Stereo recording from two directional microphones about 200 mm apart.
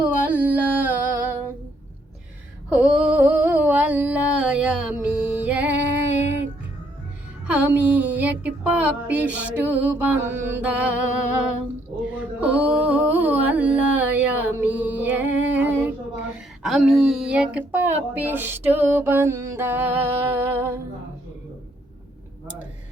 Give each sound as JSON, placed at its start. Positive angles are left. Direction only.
{"t": 0.2, "sound": "music", "side_deg": -10}
{"t": 2.6, "sound": "a sound", "side_deg": -5}
{"t": 7.4, "sound": "music", "side_deg": -5}
{"t": 12.4, "sound": "music", "side_deg": -5}
{"t": 16.3, "sound": "speech", "side_deg": 0}